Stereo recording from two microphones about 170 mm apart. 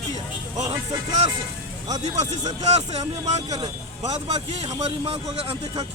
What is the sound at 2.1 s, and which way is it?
A man's voice, 40° right (ahead or behind).